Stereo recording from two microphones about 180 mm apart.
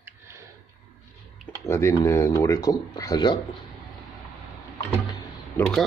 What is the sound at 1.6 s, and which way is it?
Speech, 15° left (ahead or behind).